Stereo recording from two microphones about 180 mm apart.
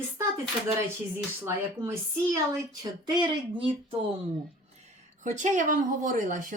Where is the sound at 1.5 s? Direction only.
15° right (ahead or behind).